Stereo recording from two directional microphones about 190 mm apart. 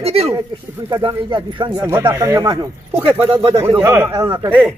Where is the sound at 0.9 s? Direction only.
20° right (ahead or behind).